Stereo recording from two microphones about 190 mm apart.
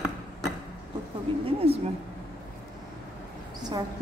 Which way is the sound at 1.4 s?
30° right (ahead or behind).